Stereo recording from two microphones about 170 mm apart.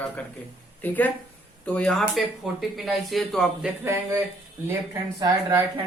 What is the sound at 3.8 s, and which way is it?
Speech, 15° right (ahead or behind).